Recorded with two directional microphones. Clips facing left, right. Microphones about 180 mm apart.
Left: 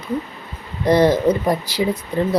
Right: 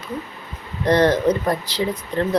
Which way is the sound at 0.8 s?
10° left (ahead or behind).